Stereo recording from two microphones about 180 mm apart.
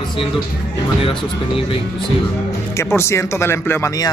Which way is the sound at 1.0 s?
30° left (ahead or behind).